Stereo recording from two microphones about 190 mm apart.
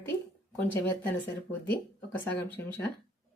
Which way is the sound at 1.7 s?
10° left (ahead or behind).